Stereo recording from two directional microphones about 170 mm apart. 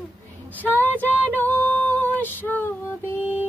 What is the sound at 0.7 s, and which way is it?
Female singing, 10° left (ahead or behind).